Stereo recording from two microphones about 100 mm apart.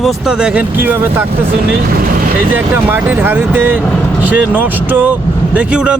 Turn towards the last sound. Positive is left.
turn(degrees=-10)  # may be behind; listen again after turning